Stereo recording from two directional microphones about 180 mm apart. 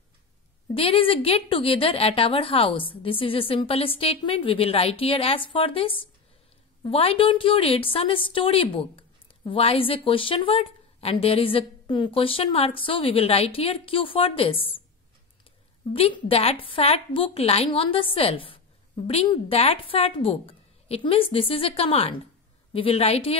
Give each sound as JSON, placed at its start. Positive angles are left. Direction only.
{"t": 0.7, "sound": "a woman's voice", "side_deg": 30}
{"t": 15.9, "sound": "a woman's voice", "side_deg": 35}